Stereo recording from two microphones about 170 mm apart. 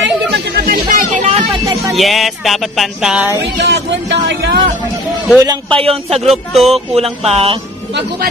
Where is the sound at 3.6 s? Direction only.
85° right.